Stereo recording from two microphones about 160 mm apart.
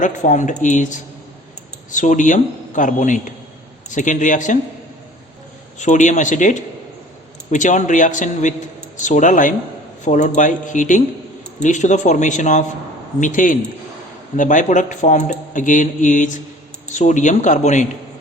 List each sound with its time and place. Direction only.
0.0 s speech: 50° left (ahead or behind)
5.8 s speech: 50° left (ahead or behind)